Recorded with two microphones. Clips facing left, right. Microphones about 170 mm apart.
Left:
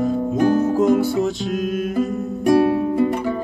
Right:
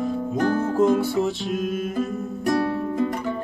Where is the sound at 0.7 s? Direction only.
Centre (ahead or behind).